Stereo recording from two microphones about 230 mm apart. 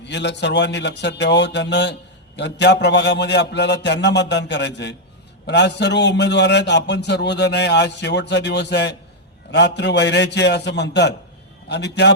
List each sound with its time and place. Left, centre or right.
0.0 s a man's voice: left